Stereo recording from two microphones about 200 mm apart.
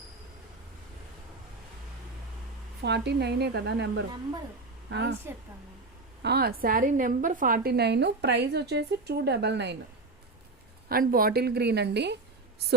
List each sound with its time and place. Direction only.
2.8 s a woman's voice: 55° right (ahead or behind)
6.2 s a woman's voice: 50° right (ahead or behind)
10.8 s a woman's voice: 45° right (ahead or behind)